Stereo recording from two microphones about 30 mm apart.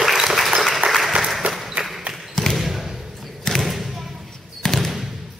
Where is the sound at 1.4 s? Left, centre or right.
Right.